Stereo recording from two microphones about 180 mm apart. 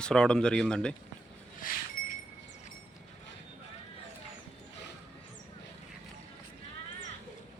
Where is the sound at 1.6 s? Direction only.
50° left (ahead or behind).